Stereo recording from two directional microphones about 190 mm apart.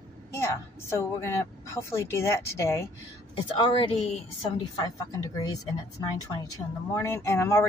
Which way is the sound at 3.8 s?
35° left (ahead or behind).